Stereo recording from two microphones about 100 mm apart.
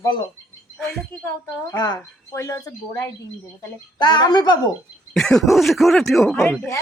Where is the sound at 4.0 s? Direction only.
45° left (ahead or behind).